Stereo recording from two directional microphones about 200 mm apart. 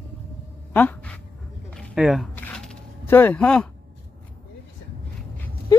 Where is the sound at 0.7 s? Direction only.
10° left (ahead or behind).